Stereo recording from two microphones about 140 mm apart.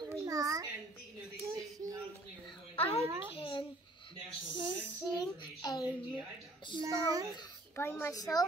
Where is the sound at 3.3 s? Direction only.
40° left (ahead or behind).